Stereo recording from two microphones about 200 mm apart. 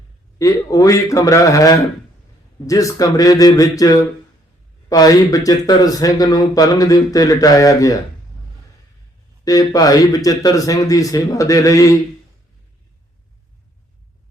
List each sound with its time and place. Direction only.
0.3 s speech: 15° left (ahead or behind)
9.4 s speech: 20° left (ahead or behind)